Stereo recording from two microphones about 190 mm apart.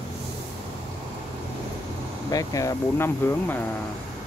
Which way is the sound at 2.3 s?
20° left (ahead or behind).